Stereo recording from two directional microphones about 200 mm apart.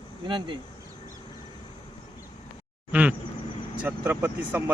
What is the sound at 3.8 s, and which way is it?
Speech, 10° right (ahead or behind).